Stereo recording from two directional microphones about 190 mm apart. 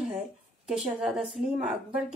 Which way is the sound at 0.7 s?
Centre (ahead or behind).